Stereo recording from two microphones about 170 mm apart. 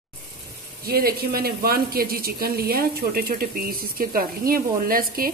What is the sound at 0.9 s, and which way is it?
Speech, 65° right (ahead or behind).